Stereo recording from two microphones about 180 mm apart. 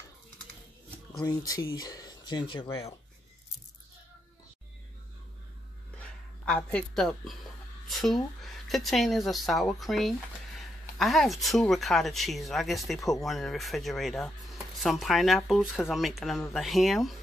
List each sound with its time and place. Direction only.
1.2 s speech: 20° left (ahead or behind)
5.9 s a sound: 5° left (ahead or behind)
8.0 s speech: centre (ahead or behind)